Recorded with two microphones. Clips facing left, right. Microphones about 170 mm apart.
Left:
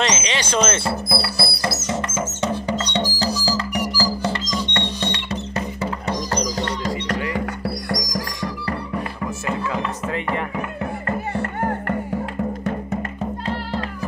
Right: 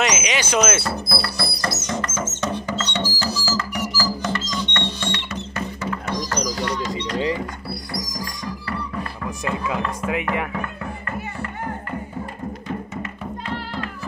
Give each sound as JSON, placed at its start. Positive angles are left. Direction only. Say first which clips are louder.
{"t": 0.0, "sound": "speech", "louder": "even", "side_deg": -10}
{"t": 1.0, "sound": "music", "louder": "left 2 dB", "side_deg": 10}
{"t": 1.9, "sound": "music", "louder": "left 2 dB", "side_deg": 25}
{"t": 2.5, "sound": "music", "louder": "left 3 dB", "side_deg": 15}
{"t": 4.0, "sound": "music", "louder": "left 1 dB", "side_deg": 30}
{"t": 4.5, "sound": "music", "louder": "left 2 dB", "side_deg": 15}
{"t": 5.0, "sound": "music", "louder": "left 2 dB", "side_deg": 35}
{"t": 7.9, "sound": "music", "louder": "left 5 dB", "side_deg": 90}